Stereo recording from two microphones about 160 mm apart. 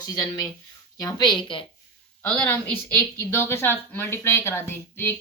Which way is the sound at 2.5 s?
15° left (ahead or behind).